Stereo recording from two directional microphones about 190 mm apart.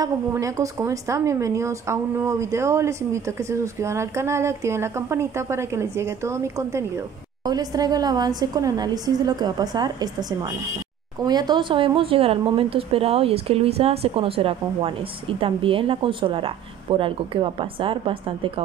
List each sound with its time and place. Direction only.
0.0 s a woman's voice: 15° right (ahead or behind)
11.2 s speech: 20° right (ahead or behind)